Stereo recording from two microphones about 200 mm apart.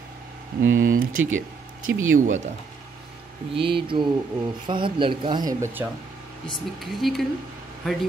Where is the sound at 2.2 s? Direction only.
40° right (ahead or behind).